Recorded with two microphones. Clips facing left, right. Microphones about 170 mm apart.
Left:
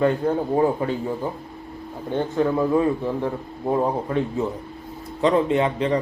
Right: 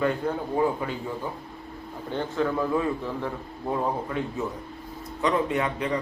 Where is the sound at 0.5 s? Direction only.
30° left (ahead or behind).